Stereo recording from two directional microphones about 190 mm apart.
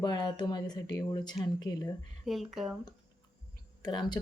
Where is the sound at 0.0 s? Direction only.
20° left (ahead or behind).